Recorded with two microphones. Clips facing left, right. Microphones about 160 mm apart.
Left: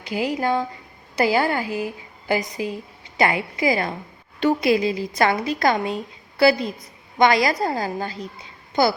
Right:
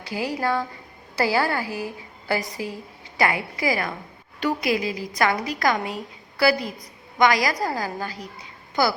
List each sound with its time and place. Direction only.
0.0 s a woman's voice: 20° left (ahead or behind)